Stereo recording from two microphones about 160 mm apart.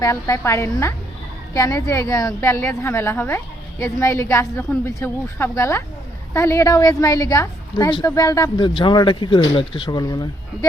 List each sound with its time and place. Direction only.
0.0 s a woman's voice: 20° left (ahead or behind)